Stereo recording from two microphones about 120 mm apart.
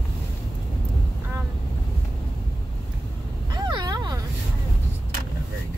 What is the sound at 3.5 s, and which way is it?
Vehicle, 35° right (ahead or behind).